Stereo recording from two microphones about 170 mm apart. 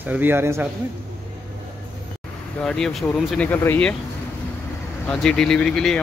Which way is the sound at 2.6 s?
5° left (ahead or behind).